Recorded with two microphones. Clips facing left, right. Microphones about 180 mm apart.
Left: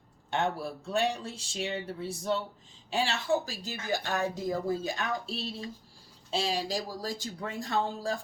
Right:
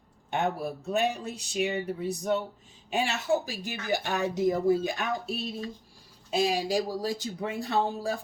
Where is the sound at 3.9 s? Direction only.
15° right (ahead or behind).